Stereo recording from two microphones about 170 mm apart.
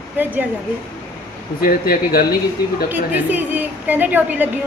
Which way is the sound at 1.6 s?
60° left (ahead or behind).